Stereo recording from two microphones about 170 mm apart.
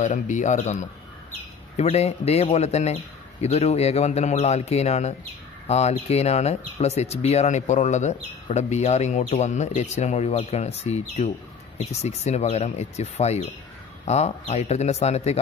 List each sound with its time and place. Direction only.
0.0 s speech: 45° left (ahead or behind)